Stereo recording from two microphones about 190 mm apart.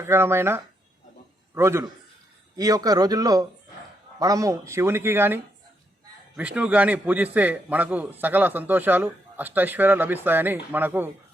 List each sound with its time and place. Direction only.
0.0 s speech: 15° right (ahead or behind)